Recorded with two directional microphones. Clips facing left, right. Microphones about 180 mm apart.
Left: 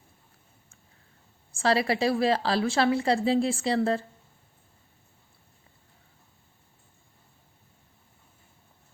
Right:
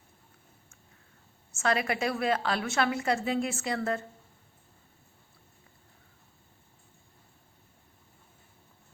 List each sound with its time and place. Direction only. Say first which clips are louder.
1.5 s a woman's voice: left 4 dB; 30° left (ahead or behind)